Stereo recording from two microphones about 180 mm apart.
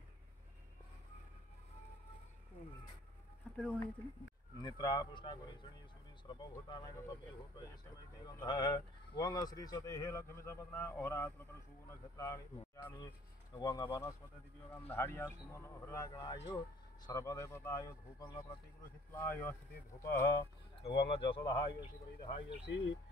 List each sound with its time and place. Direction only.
3.5 s speech: 5° left (ahead or behind)
4.6 s speech: 20° left (ahead or behind)
8.3 s speech: 20° left (ahead or behind)
20.8 s speech: 30° left (ahead or behind)